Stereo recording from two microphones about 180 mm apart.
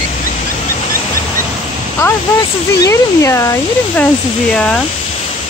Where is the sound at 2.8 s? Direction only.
15° left (ahead or behind).